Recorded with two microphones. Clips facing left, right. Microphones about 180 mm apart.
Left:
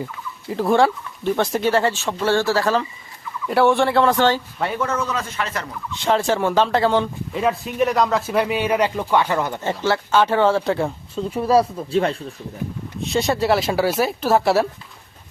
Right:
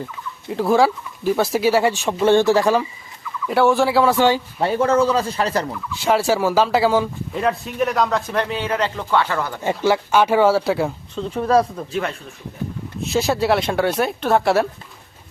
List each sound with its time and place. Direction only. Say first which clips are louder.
0.4 s speech: right 1 dB; centre (ahead or behind); by 2.8 s 15° right (ahead or behind)
3.4 s speech: even; centre (ahead or behind)
4.6 s speech: right 8 dB; 30° right (ahead or behind)
6.0 s speech: right 1 dB; 5° right (ahead or behind); by 9.6 s 20° left (ahead or behind)
9.6 s speech: right 7 dB; 10° right (ahead or behind)
11.2 s speech: even; 10° left (ahead or behind)
11.9 s speech: left 5 dB; 30° left (ahead or behind)
13.0 s speech: right 1 dB; centre (ahead or behind)